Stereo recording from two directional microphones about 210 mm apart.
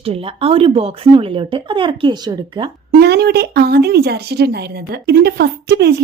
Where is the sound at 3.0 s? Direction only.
50° right (ahead or behind).